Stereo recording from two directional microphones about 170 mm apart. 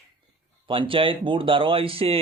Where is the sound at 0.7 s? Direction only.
30° right (ahead or behind).